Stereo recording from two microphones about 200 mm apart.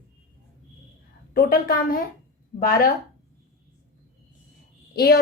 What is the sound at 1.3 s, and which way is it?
Speech, 45° left (ahead or behind).